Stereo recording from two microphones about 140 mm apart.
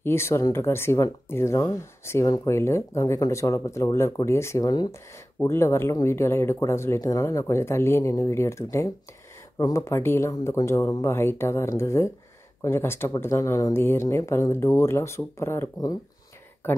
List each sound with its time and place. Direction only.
0.0 s speech: 20° left (ahead or behind)